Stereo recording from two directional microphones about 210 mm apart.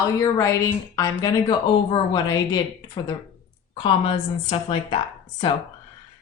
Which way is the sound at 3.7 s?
20° left (ahead or behind).